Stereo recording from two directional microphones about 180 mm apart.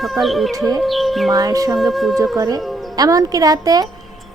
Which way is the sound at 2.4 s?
20° right (ahead or behind).